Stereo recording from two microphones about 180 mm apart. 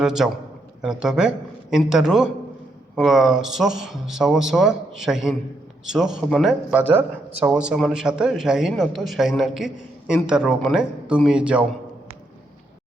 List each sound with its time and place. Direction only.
0.0 s a man's voice: centre (ahead or behind)